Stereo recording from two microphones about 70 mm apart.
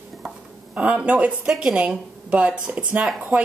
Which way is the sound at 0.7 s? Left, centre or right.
Centre.